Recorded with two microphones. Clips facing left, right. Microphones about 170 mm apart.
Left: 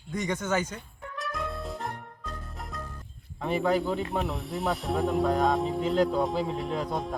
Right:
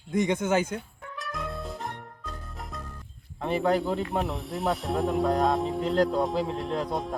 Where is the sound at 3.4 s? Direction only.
Centre (ahead or behind).